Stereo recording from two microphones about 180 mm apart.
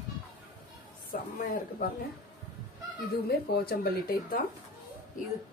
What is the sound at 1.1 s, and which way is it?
Speech, 50° left (ahead or behind).